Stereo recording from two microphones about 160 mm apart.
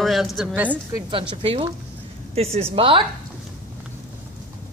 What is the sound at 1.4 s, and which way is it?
A woman's voice, 35° right (ahead or behind).